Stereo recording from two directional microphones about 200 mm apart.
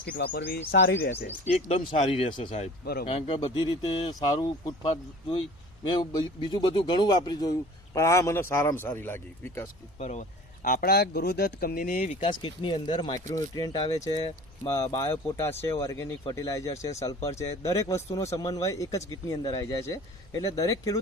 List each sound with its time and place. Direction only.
0.0 s speech: 50° left (ahead or behind)
1.5 s speech: 30° left (ahead or behind)
2.8 s speech: 50° left (ahead or behind)
3.1 s speech: 30° left (ahead or behind); by 9.6 s 10° left (ahead or behind)
10.0 s speech: 35° left (ahead or behind)
12.2 s speech: 25° left (ahead or behind)